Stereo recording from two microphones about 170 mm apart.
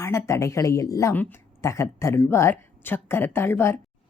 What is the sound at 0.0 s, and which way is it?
A woman's voice, 15° left (ahead or behind).